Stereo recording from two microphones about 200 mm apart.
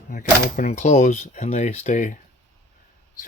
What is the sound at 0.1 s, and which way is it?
Speech, 40° left (ahead or behind).